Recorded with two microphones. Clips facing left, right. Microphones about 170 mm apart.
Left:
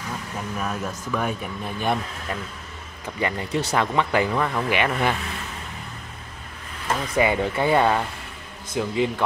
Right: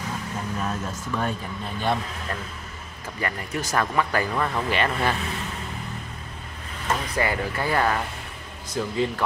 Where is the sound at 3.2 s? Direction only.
20° left (ahead or behind).